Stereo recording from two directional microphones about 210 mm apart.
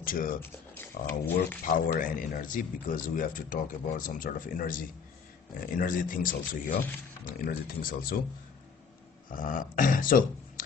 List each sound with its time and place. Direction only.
0.0 s speech: 40° left (ahead or behind)
0.4 s speech: 10° left (ahead or behind)
1.6 s speech: 40° left (ahead or behind)
9.3 s speech: 40° left (ahead or behind)